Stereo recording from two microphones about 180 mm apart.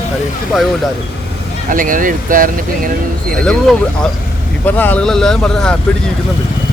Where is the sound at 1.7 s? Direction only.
50° right (ahead or behind).